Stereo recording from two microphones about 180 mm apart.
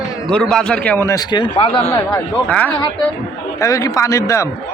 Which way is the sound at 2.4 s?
5° left (ahead or behind).